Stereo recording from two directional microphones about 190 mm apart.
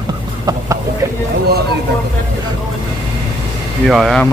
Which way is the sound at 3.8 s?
Centre (ahead or behind).